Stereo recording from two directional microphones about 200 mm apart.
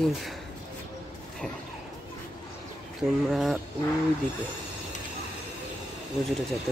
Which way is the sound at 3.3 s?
Centre (ahead or behind).